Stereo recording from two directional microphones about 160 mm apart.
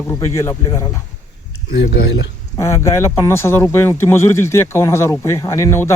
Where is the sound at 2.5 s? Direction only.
15° left (ahead or behind).